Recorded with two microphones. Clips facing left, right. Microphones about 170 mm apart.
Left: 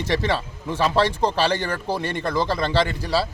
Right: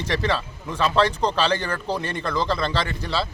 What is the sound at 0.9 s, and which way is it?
Speech, 10° left (ahead or behind).